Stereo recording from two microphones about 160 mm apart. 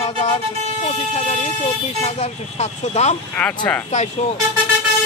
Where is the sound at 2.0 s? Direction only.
40° left (ahead or behind).